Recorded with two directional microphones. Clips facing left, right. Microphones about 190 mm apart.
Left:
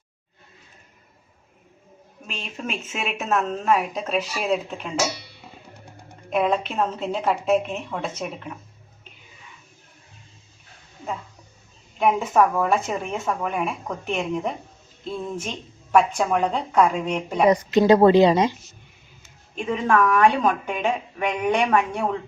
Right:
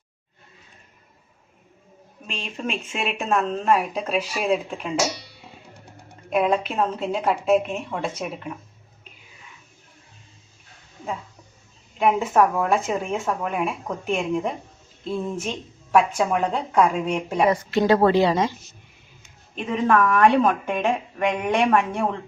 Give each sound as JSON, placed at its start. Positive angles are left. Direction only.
{"t": 2.2, "sound": "a woman's voice", "side_deg": 0}
{"t": 6.3, "sound": "a woman's voice", "side_deg": 0}
{"t": 11.9, "sound": "a woman's voice", "side_deg": 0}
{"t": 17.5, "sound": "speech", "side_deg": 20}
{"t": 19.5, "sound": "a woman's voice", "side_deg": -5}